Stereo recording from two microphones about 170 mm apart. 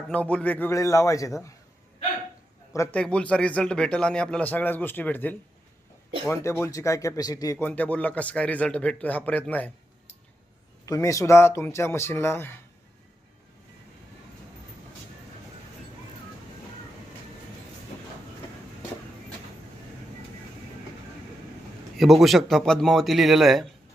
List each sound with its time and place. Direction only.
0.1 s a man's voice: 5° left (ahead or behind)
2.7 s a man's voice: 10° left (ahead or behind)
7.7 s a man's voice: 10° left (ahead or behind)
10.8 s a man's voice: 20° left (ahead or behind)
21.9 s speech: centre (ahead or behind)